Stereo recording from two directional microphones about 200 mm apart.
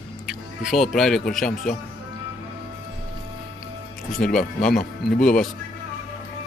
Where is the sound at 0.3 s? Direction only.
5° right (ahead or behind).